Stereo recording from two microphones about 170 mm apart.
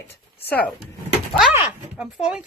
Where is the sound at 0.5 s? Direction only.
10° left (ahead or behind).